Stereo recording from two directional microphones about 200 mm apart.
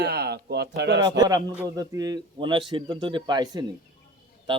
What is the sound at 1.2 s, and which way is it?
A man's voice, 20° right (ahead or behind).